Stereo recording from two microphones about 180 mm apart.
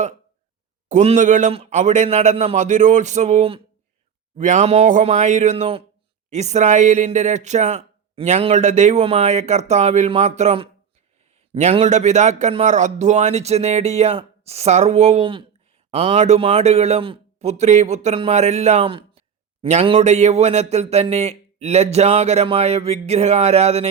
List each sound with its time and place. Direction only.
0.9 s speech: 40° right (ahead or behind)